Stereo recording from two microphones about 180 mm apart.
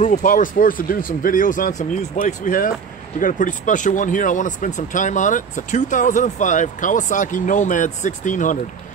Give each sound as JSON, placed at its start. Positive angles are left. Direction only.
{"t": 0.0, "sound": "speech", "side_deg": 45}